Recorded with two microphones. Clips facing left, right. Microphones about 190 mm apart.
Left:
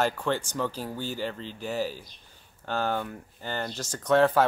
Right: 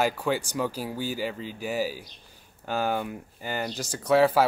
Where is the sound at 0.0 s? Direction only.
10° right (ahead or behind).